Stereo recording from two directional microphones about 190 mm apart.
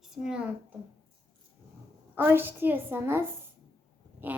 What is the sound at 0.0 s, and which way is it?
Speech, 5° right (ahead or behind).